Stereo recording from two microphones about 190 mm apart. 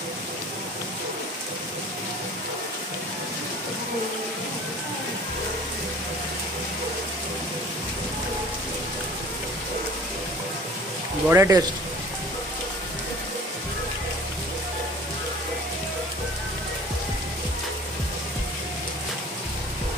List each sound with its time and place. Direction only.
11.2 s speech: 15° right (ahead or behind)